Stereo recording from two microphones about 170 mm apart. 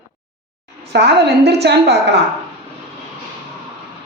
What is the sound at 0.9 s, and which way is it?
A woman's voice, 75° right (ahead or behind).